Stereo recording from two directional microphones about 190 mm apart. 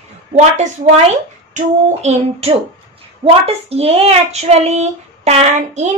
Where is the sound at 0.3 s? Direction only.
35° right (ahead or behind).